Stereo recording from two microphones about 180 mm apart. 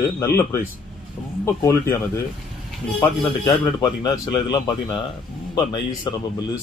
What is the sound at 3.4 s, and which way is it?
Speech, 25° left (ahead or behind).